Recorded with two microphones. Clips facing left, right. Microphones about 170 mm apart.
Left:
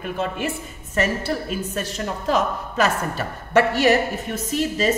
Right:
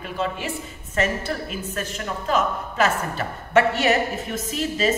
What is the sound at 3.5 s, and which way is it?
A woman's voice, 35° left (ahead or behind).